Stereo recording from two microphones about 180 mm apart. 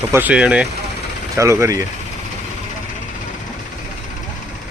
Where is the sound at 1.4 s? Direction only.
15° right (ahead or behind).